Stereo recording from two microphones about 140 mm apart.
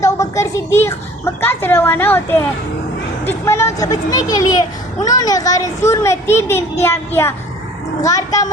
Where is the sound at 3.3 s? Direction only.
20° left (ahead or behind).